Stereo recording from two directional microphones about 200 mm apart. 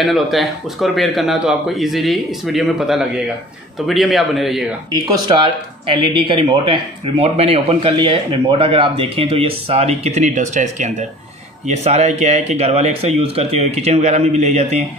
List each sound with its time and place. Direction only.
0.0 s a man's voice: centre (ahead or behind)
5.0 s speech: 25° right (ahead or behind)